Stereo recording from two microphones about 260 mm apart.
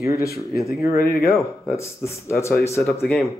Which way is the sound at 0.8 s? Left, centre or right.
Left.